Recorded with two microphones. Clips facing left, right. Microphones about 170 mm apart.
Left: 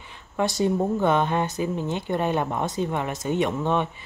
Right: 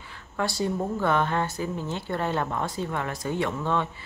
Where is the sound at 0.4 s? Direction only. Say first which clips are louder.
Left 4 dB; 20° left (ahead or behind).